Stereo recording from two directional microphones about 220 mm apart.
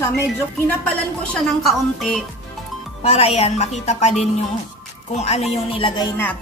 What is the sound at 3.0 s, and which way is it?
Speech, 25° left (ahead or behind).